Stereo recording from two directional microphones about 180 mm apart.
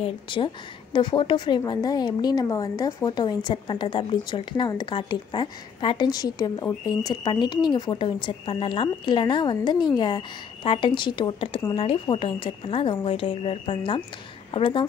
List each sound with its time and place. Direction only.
0.0 s speech: 30° left (ahead or behind)